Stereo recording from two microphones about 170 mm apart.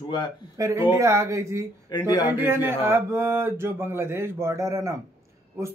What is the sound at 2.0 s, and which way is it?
Speech, 20° left (ahead or behind).